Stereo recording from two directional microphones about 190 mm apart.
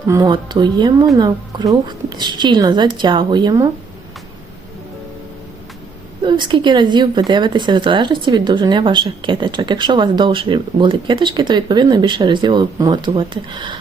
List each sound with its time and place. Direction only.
0.1 s speech: 20° right (ahead or behind)
6.2 s speech: 25° right (ahead or behind)